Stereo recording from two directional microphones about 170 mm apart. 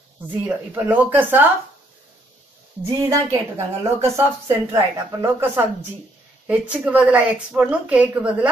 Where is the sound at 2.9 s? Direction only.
20° right (ahead or behind).